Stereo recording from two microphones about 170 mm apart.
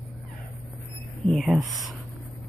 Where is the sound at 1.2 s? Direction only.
Centre (ahead or behind).